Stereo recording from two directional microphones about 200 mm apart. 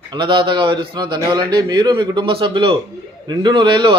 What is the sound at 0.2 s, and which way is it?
A man's voice, 25° right (ahead or behind).